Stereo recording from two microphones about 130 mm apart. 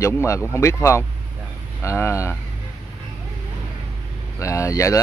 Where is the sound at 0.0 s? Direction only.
20° left (ahead or behind).